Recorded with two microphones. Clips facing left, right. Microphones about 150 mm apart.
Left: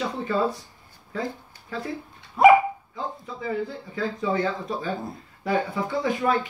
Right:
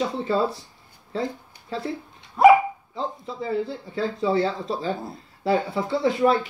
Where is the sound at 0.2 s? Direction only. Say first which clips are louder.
Left 1 dB; 30° right (ahead or behind).